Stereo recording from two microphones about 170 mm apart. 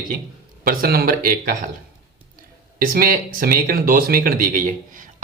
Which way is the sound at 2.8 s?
55° right (ahead or behind).